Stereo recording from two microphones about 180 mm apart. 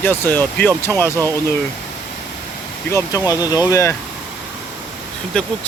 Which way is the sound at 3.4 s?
20° left (ahead or behind).